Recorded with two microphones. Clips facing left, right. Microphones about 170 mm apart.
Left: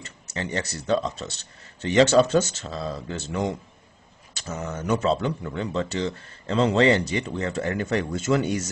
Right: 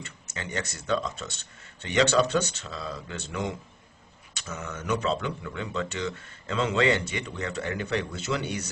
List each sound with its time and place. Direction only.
0.0 s speech: 40° left (ahead or behind)